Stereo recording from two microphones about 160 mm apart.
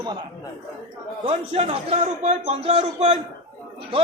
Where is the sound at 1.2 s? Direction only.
40° right (ahead or behind).